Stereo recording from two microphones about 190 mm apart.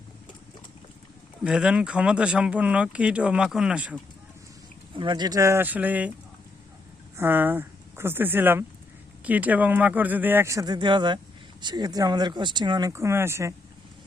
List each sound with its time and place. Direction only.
1.5 s speech: 5° right (ahead or behind)
4.9 s speech: 25° right (ahead or behind); by 6.1 s 10° right (ahead or behind)
7.2 s speech: 10° right (ahead or behind)